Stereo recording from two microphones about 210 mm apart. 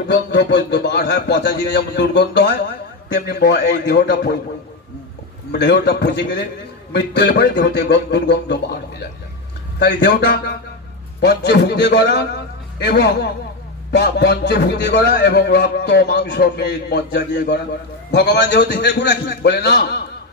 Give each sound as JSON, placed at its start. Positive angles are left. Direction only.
{"t": 0.1, "sound": "speech", "side_deg": 55}
{"t": 5.5, "sound": "speech", "side_deg": 50}
{"t": 9.8, "sound": "speech", "side_deg": 55}